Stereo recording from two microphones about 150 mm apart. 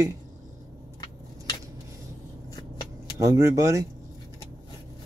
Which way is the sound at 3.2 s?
20° right (ahead or behind).